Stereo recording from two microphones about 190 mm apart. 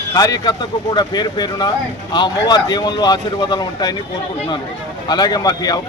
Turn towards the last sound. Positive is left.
turn(degrees=20)  # may be behind; listen again after turning